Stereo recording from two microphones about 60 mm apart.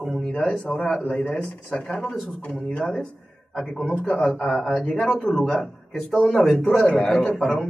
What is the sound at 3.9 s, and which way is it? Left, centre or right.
Speech, left.